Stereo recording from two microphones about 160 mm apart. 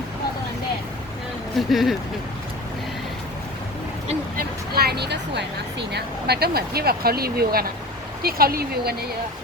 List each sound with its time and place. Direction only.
1.5 s speech: centre (ahead or behind)
4.4 s a sound: 75° right (ahead or behind)
5.9 s speech: 90° right